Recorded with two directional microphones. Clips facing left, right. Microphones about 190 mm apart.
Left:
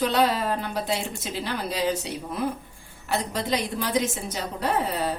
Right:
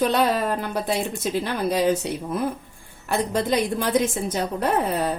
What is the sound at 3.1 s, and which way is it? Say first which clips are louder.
A woman's voice: right 4 dB; 50° right (ahead or behind).